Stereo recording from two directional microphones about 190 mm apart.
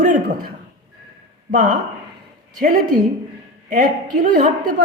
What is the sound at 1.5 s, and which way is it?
Speech, 45° right (ahead or behind).